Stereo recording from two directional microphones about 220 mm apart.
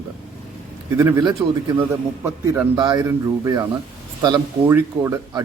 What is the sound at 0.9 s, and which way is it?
Speech, 10° right (ahead or behind).